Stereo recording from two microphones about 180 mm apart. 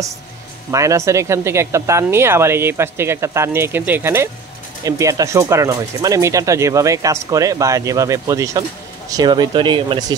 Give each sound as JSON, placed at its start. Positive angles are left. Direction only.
{"t": 0.7, "sound": "speech", "side_deg": -15}